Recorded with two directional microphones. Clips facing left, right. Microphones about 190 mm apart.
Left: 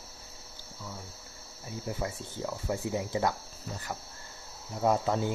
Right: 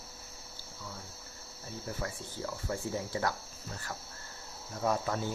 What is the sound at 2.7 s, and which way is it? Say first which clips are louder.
Speech: left 4 dB; 20° left (ahead or behind).